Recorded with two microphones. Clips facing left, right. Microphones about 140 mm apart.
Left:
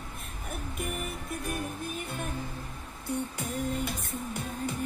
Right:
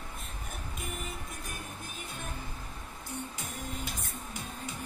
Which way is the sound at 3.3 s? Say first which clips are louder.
Left 8 dB; 60° left (ahead or behind).